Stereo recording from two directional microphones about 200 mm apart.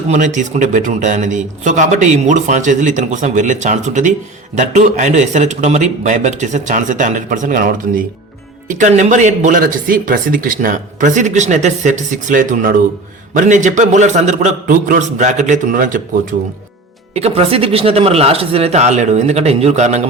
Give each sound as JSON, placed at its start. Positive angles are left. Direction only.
{"t": 0.1, "sound": "speech", "side_deg": -40}
{"t": 17.2, "sound": "speech", "side_deg": -30}